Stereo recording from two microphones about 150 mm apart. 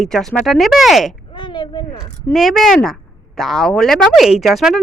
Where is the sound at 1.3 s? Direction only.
30° left (ahead or behind).